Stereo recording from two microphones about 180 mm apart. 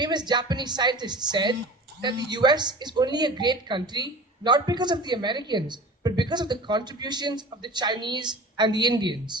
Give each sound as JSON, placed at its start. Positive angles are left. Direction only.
{"t": 0.0, "sound": "a woman's voice", "side_deg": -25}